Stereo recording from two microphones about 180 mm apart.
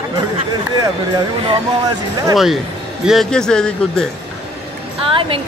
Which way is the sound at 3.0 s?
Centre (ahead or behind).